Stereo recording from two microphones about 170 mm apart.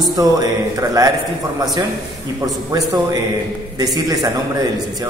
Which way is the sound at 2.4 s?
20° right (ahead or behind).